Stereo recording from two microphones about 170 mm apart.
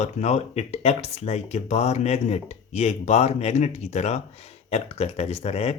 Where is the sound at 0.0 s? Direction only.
40° left (ahead or behind).